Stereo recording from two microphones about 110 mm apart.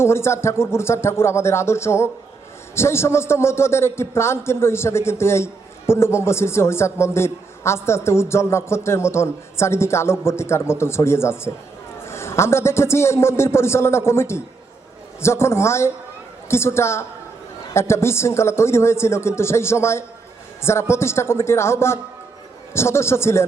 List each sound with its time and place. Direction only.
0.0 s a man's voice: 25° left (ahead or behind)